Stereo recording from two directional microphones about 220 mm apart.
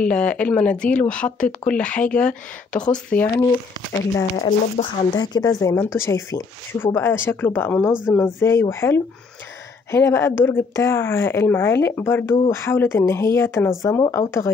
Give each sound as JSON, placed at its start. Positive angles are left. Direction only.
{"t": 0.0, "sound": "a woman's voice", "side_deg": 5}
{"t": 4.8, "sound": "speech", "side_deg": 35}
{"t": 5.1, "sound": "a woman's voice", "side_deg": 15}
{"t": 7.9, "sound": "speech", "side_deg": -5}
{"t": 8.2, "sound": "a woman's voice", "side_deg": 10}